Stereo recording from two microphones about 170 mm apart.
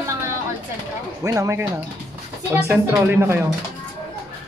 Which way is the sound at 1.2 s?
20° right (ahead or behind).